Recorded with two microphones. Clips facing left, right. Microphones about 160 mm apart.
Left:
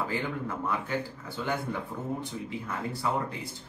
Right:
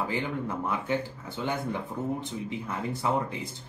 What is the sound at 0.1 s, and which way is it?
Speech, 20° right (ahead or behind).